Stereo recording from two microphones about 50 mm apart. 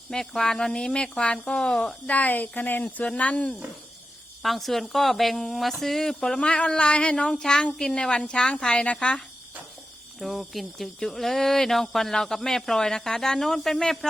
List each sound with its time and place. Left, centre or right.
0.1 s speech: centre
2.0 s a woman's voice: left
4.4 s speech: centre
6.4 s a woman's voice: centre
10.2 s speech: centre